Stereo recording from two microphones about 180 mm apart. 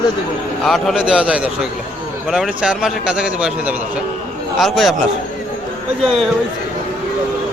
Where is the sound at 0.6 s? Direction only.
Centre (ahead or behind).